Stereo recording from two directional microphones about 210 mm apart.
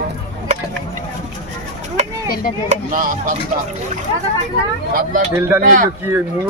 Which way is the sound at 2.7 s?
40° right (ahead or behind).